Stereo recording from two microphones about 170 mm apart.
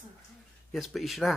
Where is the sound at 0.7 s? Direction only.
Centre (ahead or behind).